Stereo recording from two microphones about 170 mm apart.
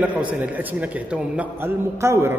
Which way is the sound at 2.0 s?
15° right (ahead or behind).